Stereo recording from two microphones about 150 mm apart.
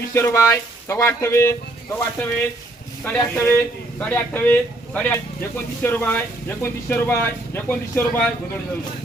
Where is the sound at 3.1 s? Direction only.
10° left (ahead or behind).